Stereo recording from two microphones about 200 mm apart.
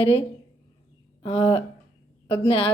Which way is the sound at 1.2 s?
30° left (ahead or behind).